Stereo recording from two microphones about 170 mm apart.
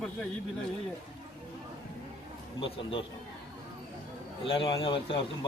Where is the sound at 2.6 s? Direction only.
30° left (ahead or behind).